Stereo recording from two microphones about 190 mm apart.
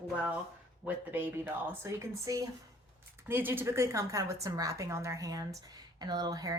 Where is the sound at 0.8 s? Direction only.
10° right (ahead or behind).